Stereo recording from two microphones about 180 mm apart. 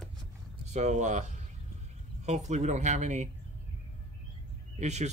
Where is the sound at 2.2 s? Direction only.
40° right (ahead or behind).